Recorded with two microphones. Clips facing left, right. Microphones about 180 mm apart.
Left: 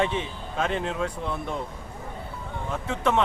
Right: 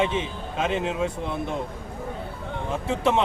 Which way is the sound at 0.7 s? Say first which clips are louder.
Right 2 dB; 10° right (ahead or behind).